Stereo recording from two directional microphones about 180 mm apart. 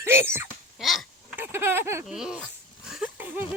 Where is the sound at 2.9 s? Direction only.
5° right (ahead or behind).